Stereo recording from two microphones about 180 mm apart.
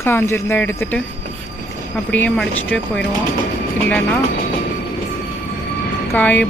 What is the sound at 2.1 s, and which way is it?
Speech, 10° left (ahead or behind).